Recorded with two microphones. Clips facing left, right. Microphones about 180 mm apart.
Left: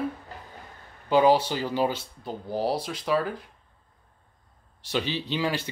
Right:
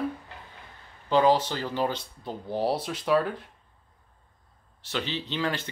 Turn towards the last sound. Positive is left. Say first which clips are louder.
# left 2 dB
turn(degrees=10)  # may be behind; listen again after turning